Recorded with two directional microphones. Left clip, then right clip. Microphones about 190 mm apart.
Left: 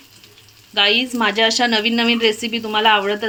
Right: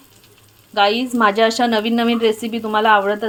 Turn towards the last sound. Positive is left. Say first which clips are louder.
# right 1 dB
turn(degrees=-25)  # may be behind; listen again after turning